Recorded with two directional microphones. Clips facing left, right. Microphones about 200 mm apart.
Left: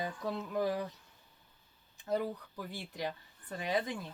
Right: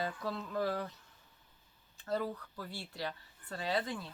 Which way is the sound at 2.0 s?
15° left (ahead or behind).